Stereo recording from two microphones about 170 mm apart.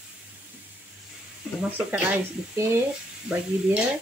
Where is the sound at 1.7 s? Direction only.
10° right (ahead or behind).